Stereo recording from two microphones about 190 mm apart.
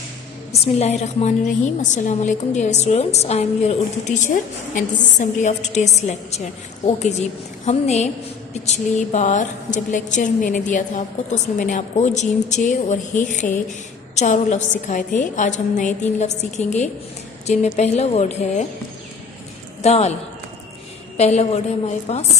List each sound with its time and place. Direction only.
0.8 s a woman's voice: 35° left (ahead or behind)
19.8 s a woman's voice: 35° left (ahead or behind)
21.2 s a woman's voice: 35° left (ahead or behind)